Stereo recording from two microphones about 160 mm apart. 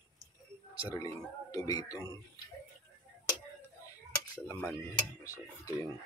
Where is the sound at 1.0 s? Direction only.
20° left (ahead or behind).